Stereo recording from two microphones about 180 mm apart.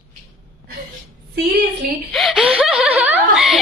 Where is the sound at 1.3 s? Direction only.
70° right (ahead or behind).